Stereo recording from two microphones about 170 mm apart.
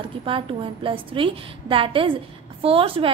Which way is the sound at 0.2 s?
30° right (ahead or behind).